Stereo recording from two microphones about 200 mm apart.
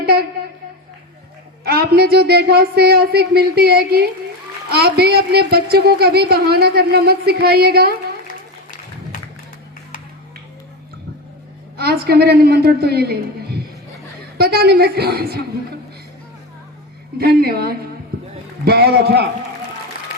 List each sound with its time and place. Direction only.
0.0 s a sound: 50° right (ahead or behind)
1.6 s a woman's voice: 50° right (ahead or behind)
11.8 s a woman's voice: 55° right (ahead or behind)
17.2 s a woman's voice: 50° right (ahead or behind)